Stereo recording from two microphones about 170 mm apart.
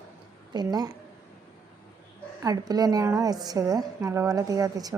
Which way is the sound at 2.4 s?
20° right (ahead or behind).